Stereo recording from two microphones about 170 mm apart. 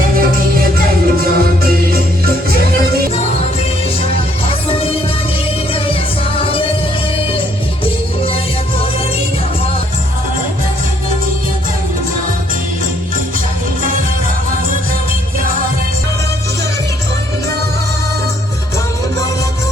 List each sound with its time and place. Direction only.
0.2 s music: 60° right (ahead or behind)
4.7 s music: 35° left (ahead or behind)